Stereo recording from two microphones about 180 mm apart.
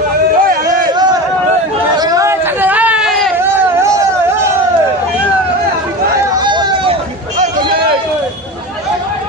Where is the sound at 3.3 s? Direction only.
15° right (ahead or behind).